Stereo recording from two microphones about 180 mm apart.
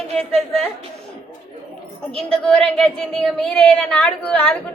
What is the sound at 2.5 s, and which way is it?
A woman's voice, 5° left (ahead or behind).